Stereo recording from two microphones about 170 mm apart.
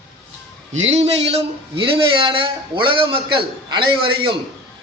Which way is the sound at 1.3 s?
30° right (ahead or behind).